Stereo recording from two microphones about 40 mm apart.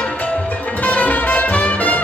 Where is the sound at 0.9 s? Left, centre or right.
Left.